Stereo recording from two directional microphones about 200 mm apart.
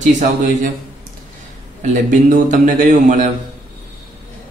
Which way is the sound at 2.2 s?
40° right (ahead or behind).